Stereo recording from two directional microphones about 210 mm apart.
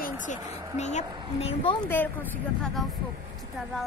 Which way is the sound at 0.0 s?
40° left (ahead or behind).